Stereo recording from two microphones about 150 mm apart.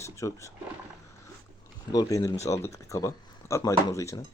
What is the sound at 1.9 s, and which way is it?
Speech, 25° left (ahead or behind).